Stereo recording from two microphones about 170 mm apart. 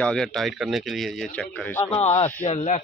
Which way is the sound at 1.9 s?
40° left (ahead or behind).